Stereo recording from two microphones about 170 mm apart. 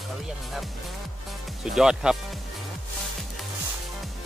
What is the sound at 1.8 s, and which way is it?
Speech, 5° right (ahead or behind).